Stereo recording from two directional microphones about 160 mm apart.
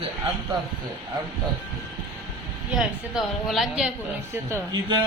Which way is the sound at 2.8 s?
Centre (ahead or behind).